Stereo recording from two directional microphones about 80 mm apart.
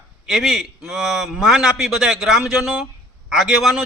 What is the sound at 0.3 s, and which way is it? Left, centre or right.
A man's voice, centre.